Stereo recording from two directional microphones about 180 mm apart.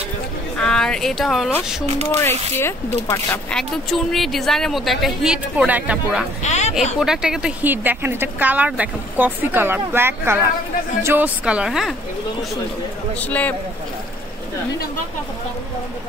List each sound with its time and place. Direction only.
0.6 s a sound: 5° left (ahead or behind)
2.2 s a man's voice: 15° left (ahead or behind)
3.5 s a woman's voice: centre (ahead or behind)
6.4 s a sound: 40° left (ahead or behind)
7.0 s speech: 5° right (ahead or behind)
13.1 s a man's voice: 10° left (ahead or behind)